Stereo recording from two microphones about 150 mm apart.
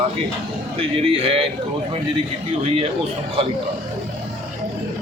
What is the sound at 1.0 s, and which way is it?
Speech, 40° right (ahead or behind).